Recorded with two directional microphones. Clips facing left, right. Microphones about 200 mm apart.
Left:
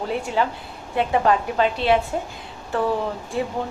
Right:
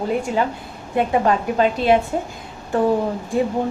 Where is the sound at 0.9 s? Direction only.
40° right (ahead or behind).